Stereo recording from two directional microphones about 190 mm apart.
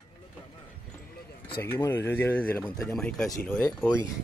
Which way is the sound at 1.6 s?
10° left (ahead or behind).